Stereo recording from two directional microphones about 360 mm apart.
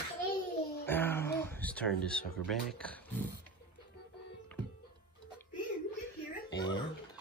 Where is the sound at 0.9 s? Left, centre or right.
Centre.